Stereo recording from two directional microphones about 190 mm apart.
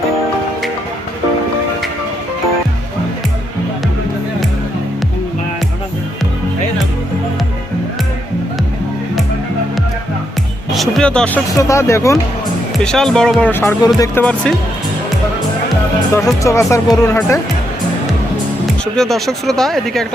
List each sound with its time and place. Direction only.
10.7 s music: centre (ahead or behind)
11.5 s speech: 15° left (ahead or behind)
12.7 s speech: 5° left (ahead or behind)
16.1 s speech: 15° left (ahead or behind)
18.9 s speech: centre (ahead or behind)